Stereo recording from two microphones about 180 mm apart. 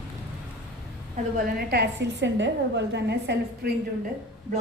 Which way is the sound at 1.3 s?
65° right (ahead or behind).